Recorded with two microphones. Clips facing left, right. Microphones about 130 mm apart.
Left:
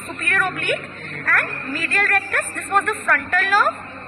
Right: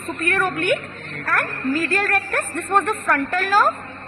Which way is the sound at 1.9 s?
35° right (ahead or behind).